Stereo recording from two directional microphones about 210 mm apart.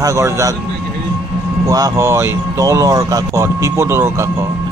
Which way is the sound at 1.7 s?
15° right (ahead or behind).